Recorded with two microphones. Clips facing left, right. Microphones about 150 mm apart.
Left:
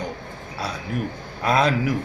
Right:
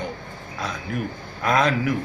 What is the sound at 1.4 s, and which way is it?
Speech, 30° left (ahead or behind).